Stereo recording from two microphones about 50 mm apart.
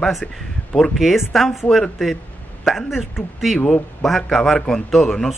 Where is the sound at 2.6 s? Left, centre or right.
Centre.